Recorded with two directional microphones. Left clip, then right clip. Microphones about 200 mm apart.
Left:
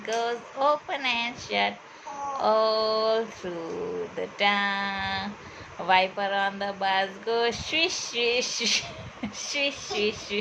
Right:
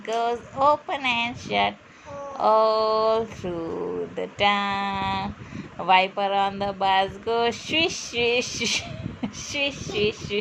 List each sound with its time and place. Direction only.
0.0 s speech: 15° right (ahead or behind)